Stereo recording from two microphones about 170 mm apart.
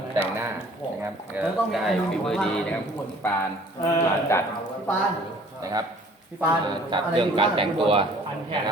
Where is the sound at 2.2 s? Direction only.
5° left (ahead or behind).